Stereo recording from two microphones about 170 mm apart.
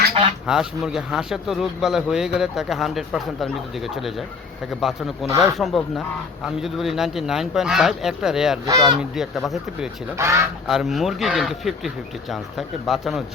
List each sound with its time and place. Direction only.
0.4 s speech: 5° right (ahead or behind)
8.6 s speech: 20° right (ahead or behind)
9.0 s speech: centre (ahead or behind)
10.2 s speech: 15° right (ahead or behind)
10.7 s speech: centre (ahead or behind)